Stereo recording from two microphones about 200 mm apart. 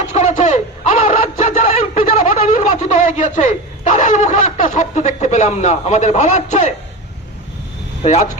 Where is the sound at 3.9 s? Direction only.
40° left (ahead or behind).